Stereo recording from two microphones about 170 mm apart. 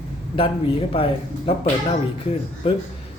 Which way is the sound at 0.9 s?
35° left (ahead or behind).